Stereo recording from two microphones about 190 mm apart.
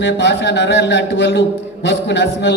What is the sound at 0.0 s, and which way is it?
A man's voice, 70° left (ahead or behind).